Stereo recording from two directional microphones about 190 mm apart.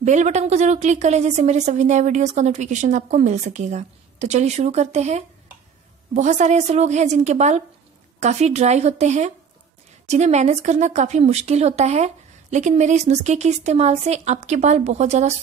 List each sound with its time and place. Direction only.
0.0 s speech: 40° right (ahead or behind)